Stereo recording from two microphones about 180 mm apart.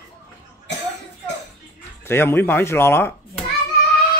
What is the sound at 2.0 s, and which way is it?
A man's voice, 15° left (ahead or behind).